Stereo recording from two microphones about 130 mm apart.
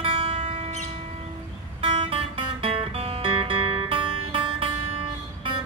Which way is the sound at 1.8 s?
40° right (ahead or behind).